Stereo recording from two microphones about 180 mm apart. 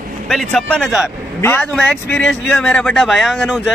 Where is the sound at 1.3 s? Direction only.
15° left (ahead or behind).